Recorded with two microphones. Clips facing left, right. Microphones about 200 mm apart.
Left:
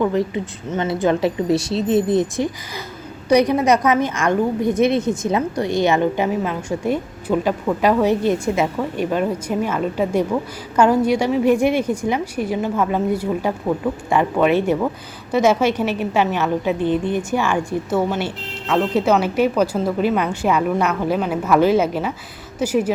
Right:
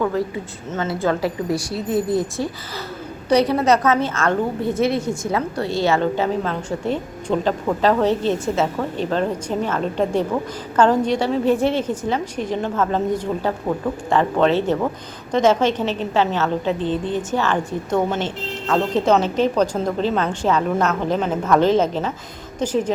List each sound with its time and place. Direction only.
0.0 s a woman's voice: 20° left (ahead or behind)